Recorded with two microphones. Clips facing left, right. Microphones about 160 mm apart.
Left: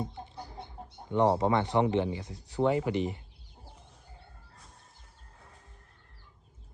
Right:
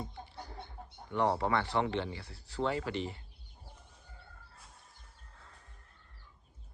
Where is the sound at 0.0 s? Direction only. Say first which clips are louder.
Left 5 dB; 20° left (ahead or behind).